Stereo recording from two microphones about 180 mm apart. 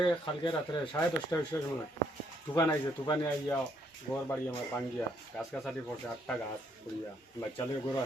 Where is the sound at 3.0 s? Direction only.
10° left (ahead or behind).